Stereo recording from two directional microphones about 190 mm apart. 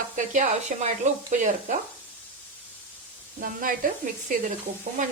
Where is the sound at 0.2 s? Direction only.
40° right (ahead or behind).